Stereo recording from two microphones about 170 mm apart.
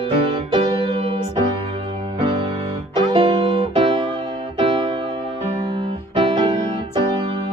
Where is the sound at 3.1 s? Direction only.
30° right (ahead or behind).